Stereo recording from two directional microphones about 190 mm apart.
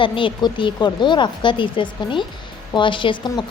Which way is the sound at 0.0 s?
25° left (ahead or behind).